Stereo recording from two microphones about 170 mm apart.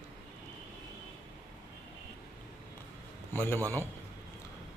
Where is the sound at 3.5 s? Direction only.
15° right (ahead or behind).